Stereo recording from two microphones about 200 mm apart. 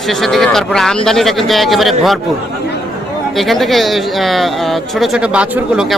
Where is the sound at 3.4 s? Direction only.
Centre (ahead or behind).